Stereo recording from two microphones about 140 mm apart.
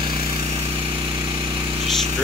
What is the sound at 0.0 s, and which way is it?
Vehicle, 45° right (ahead or behind).